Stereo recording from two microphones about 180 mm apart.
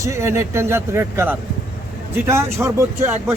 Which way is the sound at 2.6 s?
15° right (ahead or behind).